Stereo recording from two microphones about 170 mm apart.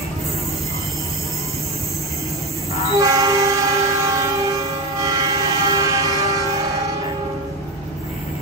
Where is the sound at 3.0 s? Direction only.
20° right (ahead or behind).